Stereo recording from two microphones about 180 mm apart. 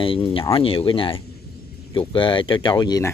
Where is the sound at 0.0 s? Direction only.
30° left (ahead or behind).